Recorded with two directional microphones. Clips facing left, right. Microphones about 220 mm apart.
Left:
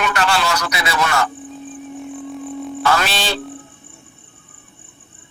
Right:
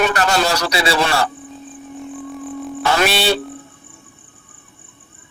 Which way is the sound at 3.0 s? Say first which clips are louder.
Right 6 dB; 10° right (ahead or behind).